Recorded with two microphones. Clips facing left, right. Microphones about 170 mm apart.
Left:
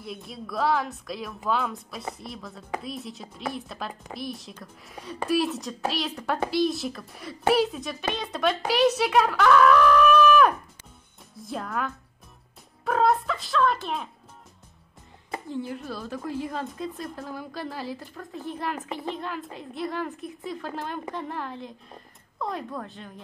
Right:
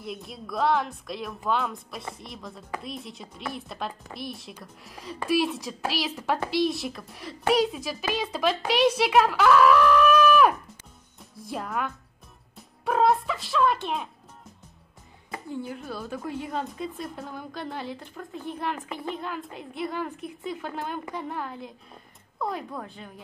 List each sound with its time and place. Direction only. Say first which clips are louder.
0.0 s a child's voice: even; centre (ahead or behind)
15.5 s a child's voice: left 1 dB; centre (ahead or behind)